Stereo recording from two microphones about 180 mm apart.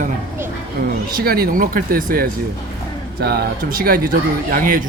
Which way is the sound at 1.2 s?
55° right (ahead or behind).